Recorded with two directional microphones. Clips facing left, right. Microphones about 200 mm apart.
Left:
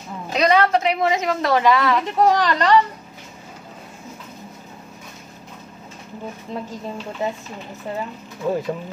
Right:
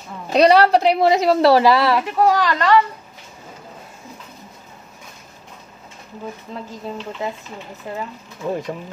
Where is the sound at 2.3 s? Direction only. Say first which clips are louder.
Even; 20° left (ahead or behind).